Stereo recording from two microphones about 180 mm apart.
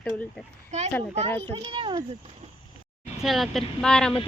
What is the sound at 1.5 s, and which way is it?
Speech, 30° right (ahead or behind).